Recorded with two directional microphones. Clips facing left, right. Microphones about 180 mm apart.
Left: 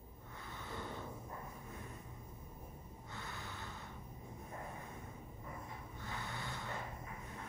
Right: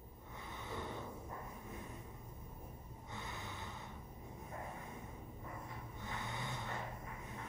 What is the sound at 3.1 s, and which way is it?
Snort, 20° right (ahead or behind).